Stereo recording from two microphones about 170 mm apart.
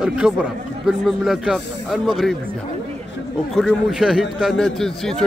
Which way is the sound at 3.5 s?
Centre (ahead or behind).